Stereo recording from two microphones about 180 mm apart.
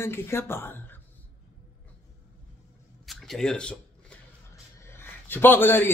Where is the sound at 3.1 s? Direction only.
Centre (ahead or behind).